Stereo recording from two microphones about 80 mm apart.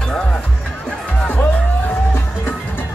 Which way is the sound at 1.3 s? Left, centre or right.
Left.